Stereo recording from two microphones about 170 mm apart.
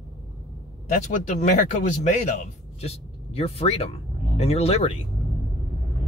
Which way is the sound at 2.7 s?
35° left (ahead or behind).